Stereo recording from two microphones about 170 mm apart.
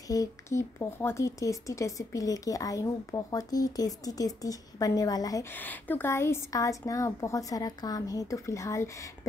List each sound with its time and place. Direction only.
0.1 s speech: 20° left (ahead or behind)